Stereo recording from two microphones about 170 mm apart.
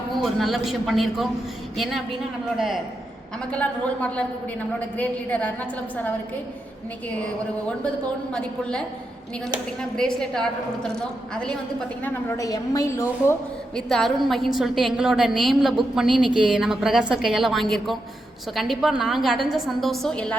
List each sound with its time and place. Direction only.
0.2 s a woman's voice: centre (ahead or behind)
8.3 s a woman's voice: 5° left (ahead or behind)
9.9 s a woman's voice: 5° left (ahead or behind)
12.0 s a woman's voice: 20° left (ahead or behind)
13.7 s a woman's voice: centre (ahead or behind)